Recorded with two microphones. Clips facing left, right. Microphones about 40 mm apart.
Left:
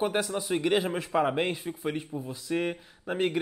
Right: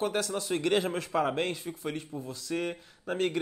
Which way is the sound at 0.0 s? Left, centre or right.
Centre.